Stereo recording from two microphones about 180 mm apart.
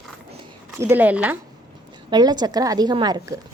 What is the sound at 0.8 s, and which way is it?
Speech, 10° right (ahead or behind).